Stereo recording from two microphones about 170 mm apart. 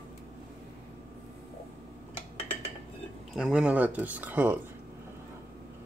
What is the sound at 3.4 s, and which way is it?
Speech, 5° right (ahead or behind).